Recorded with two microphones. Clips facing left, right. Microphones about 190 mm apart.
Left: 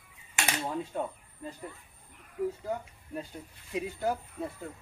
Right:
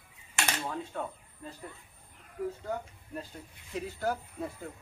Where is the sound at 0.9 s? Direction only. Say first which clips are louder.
Left 4 dB; 15° left (ahead or behind).